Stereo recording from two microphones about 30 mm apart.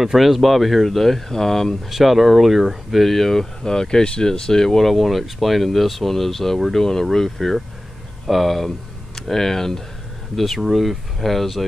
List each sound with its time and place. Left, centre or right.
0.0 s speech: centre
1.9 s speech: centre
3.0 s speech: centre
10.3 s speech: centre